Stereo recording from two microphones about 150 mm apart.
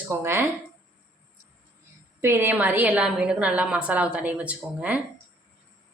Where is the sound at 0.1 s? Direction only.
15° right (ahead or behind).